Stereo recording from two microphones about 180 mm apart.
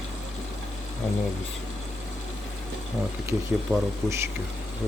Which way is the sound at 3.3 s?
15° right (ahead or behind).